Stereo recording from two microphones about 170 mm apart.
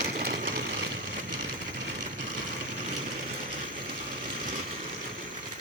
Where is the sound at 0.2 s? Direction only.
60° right (ahead or behind).